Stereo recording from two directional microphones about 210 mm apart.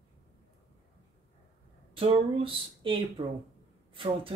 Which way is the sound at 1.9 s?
25° right (ahead or behind).